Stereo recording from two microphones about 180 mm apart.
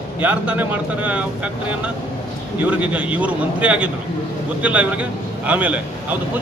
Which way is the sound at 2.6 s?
5° right (ahead or behind).